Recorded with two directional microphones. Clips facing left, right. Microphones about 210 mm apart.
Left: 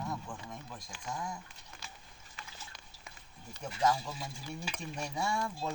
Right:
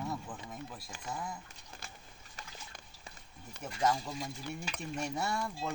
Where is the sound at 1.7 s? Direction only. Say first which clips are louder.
Right 2 dB; 30° right (ahead or behind).